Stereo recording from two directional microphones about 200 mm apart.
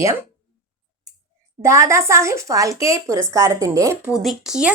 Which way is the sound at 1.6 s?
15° right (ahead or behind).